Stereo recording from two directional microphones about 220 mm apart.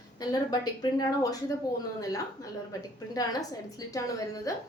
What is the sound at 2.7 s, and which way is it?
A woman's voice, 15° left (ahead or behind).